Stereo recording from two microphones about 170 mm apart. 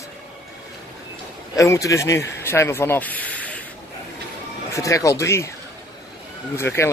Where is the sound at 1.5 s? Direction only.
20° left (ahead or behind).